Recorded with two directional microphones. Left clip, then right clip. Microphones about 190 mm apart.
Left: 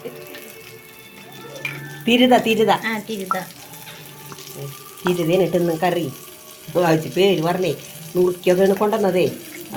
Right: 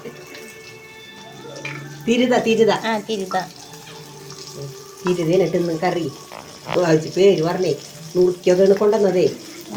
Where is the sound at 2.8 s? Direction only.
5° right (ahead or behind).